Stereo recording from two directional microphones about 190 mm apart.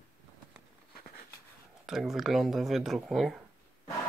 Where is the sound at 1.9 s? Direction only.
Centre (ahead or behind).